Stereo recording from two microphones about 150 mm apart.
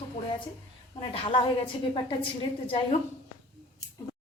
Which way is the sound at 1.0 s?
35° left (ahead or behind).